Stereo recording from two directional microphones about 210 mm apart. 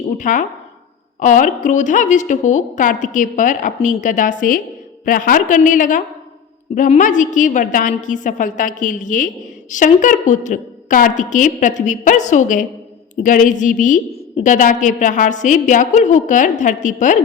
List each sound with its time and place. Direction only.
0.2 s a woman's voice: 35° left (ahead or behind)